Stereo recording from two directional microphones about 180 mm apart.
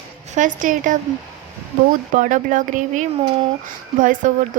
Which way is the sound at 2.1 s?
45° right (ahead or behind).